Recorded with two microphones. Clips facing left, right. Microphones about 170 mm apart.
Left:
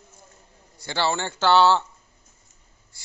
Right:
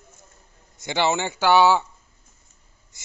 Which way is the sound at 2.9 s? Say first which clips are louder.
Right 4 dB; 20° right (ahead or behind).